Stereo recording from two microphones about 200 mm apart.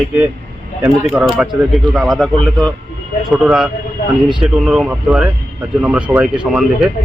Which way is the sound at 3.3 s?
Centre (ahead or behind).